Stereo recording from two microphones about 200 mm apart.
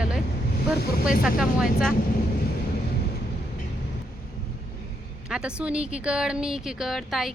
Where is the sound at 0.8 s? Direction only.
50° left (ahead or behind).